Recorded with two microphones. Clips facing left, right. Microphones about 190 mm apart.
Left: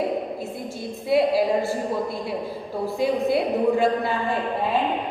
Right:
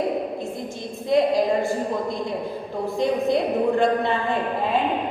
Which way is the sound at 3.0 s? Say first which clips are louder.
Right 1 dB; 5° left (ahead or behind).